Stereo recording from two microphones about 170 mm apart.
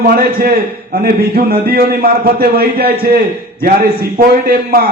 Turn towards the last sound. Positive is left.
turn(degrees=-60)  # may be behind; listen again after turning